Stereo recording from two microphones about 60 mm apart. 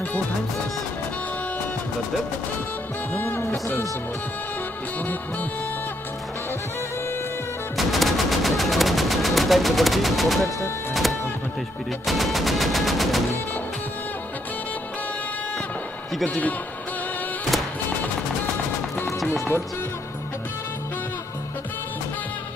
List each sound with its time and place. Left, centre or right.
3.1 s music: left
7.7 s gunshot: centre
10.9 s music: centre
12.1 s machine gun: centre
16.3 s a man's voice: left